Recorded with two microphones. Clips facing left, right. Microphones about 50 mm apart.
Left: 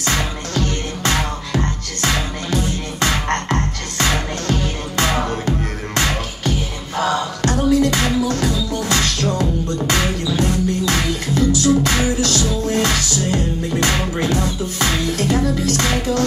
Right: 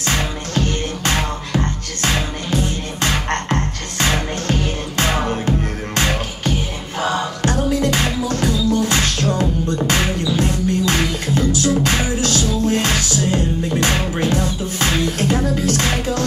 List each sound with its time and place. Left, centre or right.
1.0 s music: right
7.4 s music: right